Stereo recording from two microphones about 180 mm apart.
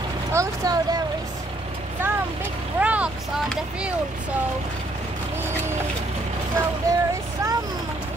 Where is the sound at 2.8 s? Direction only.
5° right (ahead or behind).